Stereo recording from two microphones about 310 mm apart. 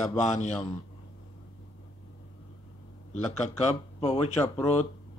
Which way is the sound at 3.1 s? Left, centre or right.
Left.